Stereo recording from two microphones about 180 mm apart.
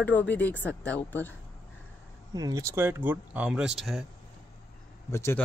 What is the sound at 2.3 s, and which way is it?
Speech, 20° right (ahead or behind).